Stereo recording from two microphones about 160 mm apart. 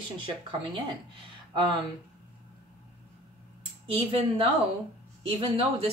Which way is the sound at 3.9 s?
35° right (ahead or behind).